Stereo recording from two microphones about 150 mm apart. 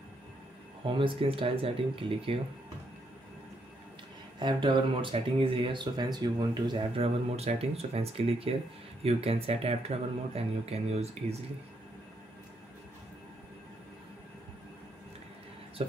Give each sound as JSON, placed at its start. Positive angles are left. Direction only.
{"t": 0.8, "sound": "speech", "side_deg": -35}
{"t": 4.4, "sound": "speech", "side_deg": -30}